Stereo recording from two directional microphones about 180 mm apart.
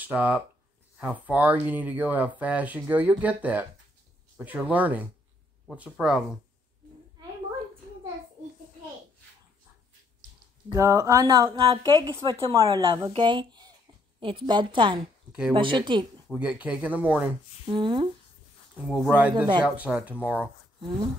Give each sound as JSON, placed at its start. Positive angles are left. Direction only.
{"t": 0.0, "sound": "speech", "side_deg": -10}
{"t": 10.7, "sound": "a woman's voice", "side_deg": -15}
{"t": 16.3, "sound": "speech", "side_deg": -5}
{"t": 17.6, "sound": "a woman's voice", "side_deg": -30}
{"t": 19.3, "sound": "a woman's voice", "side_deg": -25}
{"t": 19.6, "sound": "speech", "side_deg": -5}